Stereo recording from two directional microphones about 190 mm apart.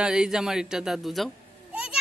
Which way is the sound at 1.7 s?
5° right (ahead or behind).